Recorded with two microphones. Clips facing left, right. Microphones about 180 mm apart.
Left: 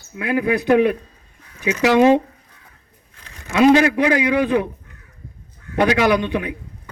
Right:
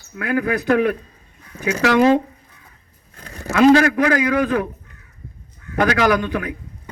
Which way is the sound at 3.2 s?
45° right (ahead or behind).